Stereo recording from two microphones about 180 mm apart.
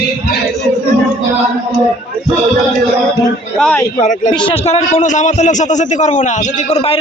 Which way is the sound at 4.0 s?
45° left (ahead or behind).